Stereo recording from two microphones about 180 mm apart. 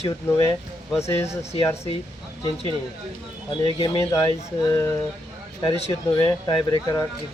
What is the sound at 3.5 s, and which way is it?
Speech, 30° left (ahead or behind).